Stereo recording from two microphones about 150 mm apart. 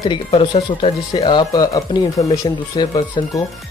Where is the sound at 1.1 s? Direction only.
30° left (ahead or behind).